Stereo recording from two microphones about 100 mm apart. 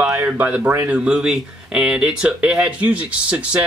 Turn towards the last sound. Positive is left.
turn(degrees=-15)  # may be behind; listen again after turning